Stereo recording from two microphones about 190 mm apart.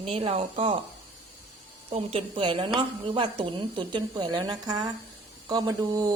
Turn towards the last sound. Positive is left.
turn(degrees=-20)  # may be behind; listen again after turning